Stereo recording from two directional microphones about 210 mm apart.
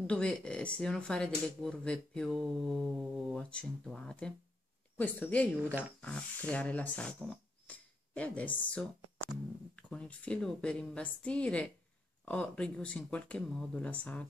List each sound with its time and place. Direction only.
0.0 s speech: 5° left (ahead or behind)